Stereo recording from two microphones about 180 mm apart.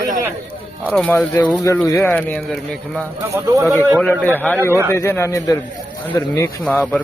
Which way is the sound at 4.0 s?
5° left (ahead or behind).